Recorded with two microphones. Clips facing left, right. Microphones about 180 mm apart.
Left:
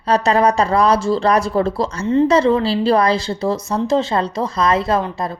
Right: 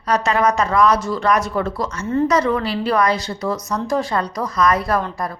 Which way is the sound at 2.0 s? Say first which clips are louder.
Left 4 dB; 20° left (ahead or behind).